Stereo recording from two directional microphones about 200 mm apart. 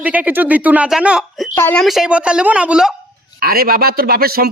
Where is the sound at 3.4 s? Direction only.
50° right (ahead or behind).